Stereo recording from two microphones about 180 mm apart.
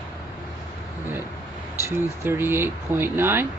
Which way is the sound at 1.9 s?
10° right (ahead or behind).